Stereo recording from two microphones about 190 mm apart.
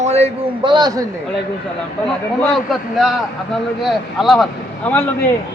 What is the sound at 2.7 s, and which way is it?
Speech, centre (ahead or behind).